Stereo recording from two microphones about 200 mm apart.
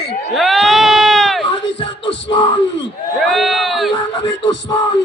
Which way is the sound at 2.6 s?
65° left (ahead or behind).